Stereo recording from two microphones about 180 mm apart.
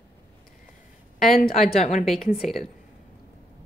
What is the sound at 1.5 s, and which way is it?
Speech, 35° left (ahead or behind).